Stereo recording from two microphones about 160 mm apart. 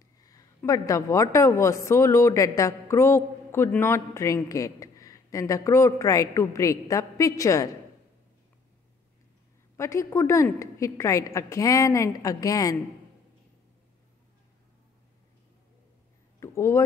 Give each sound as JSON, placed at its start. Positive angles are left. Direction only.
{"t": 0.2, "sound": "a woman's voice", "side_deg": 20}
{"t": 9.8, "sound": "a woman's voice", "side_deg": 20}
{"t": 16.3, "sound": "a sound", "side_deg": 15}